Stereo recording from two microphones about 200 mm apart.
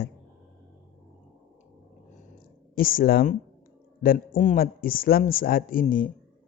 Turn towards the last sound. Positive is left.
turn(degrees=40)  # may be behind; listen again after turning